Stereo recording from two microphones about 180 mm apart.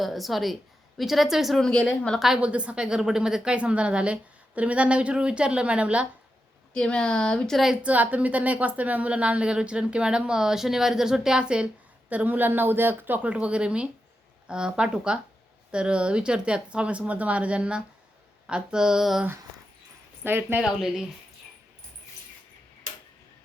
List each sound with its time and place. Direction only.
0.0 s a woman's voice: centre (ahead or behind)
6.7 s a woman's voice: 5° left (ahead or behind); by 20.6 s 10° right (ahead or behind)